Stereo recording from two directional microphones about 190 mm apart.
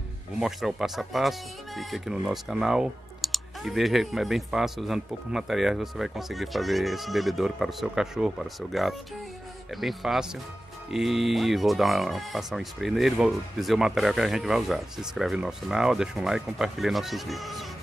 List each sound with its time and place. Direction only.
0.4 s speech: centre (ahead or behind)